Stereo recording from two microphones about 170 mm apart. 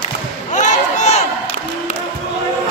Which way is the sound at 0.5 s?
45° left (ahead or behind).